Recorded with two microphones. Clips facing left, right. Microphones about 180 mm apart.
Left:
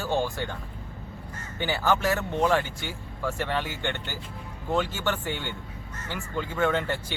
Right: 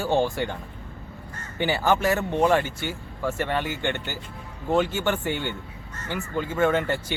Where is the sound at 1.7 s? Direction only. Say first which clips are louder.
Right 2 dB; 10° right (ahead or behind).